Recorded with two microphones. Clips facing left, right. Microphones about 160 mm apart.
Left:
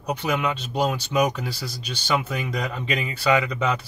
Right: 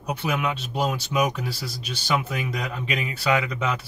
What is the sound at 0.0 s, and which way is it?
Speech, 10° right (ahead or behind).